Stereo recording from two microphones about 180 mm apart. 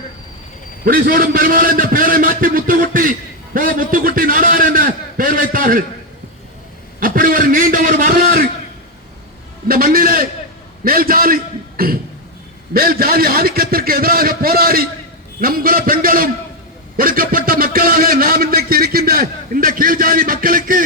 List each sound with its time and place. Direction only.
0.9 s a man's voice: 55° right (ahead or behind)
7.0 s a man's voice: 50° right (ahead or behind)
9.6 s a man's voice: 55° right (ahead or behind)